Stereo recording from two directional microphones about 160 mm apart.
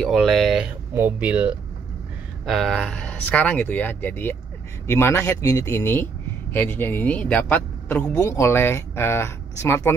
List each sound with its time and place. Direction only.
0.0 s speech: centre (ahead or behind)
2.4 s speech: centre (ahead or behind); by 9.9 s 15° left (ahead or behind)